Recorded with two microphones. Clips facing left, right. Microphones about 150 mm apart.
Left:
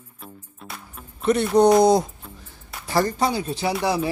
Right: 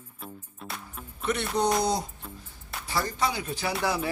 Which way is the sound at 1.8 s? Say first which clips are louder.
Left 11 dB; 90° left.